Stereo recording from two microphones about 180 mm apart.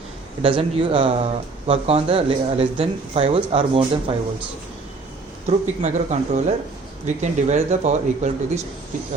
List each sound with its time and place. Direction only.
0.4 s speech: 30° right (ahead or behind)
5.5 s speech: 40° right (ahead or behind)